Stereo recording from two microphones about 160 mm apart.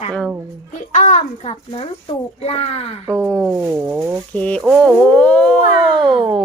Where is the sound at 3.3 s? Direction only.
Centre (ahead or behind).